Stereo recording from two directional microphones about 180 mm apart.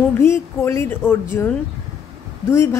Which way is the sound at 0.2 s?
15° left (ahead or behind).